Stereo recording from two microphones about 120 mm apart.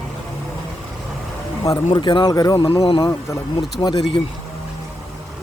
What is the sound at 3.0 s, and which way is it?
Speech, 35° left (ahead or behind).